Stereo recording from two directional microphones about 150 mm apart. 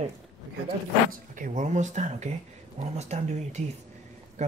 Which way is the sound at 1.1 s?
60° right (ahead or behind).